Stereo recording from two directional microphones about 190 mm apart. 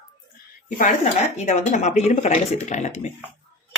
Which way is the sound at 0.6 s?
40° left (ahead or behind).